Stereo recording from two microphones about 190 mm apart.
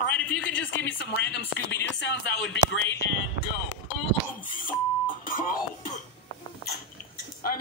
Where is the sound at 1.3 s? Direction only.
65° left (ahead or behind).